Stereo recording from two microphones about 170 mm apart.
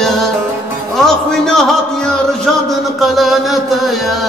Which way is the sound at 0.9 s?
5° left (ahead or behind).